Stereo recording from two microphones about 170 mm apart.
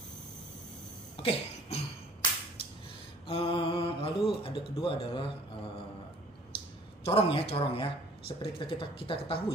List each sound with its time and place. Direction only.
1.1 s throat clearing: 35° left (ahead or behind)
3.3 s speech: 35° left (ahead or behind)
7.1 s speech: 35° left (ahead or behind)